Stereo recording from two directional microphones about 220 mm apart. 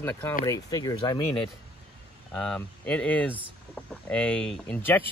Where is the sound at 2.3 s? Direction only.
5° left (ahead or behind).